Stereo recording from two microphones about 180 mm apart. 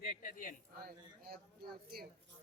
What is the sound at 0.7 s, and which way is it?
Speech, 55° right (ahead or behind).